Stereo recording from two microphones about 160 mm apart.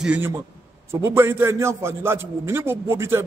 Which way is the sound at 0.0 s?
10° right (ahead or behind).